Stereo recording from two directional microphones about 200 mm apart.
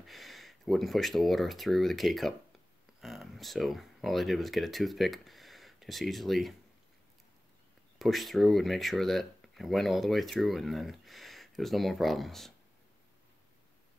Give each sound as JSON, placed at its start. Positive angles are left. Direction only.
{"t": 0.0, "sound": "speech", "side_deg": 0}
{"t": 8.0, "sound": "speech", "side_deg": 0}